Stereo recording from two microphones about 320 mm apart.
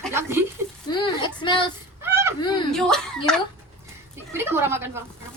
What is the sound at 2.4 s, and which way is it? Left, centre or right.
Speech, centre.